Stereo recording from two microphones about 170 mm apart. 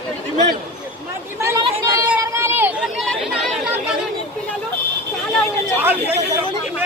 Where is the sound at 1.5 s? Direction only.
25° right (ahead or behind).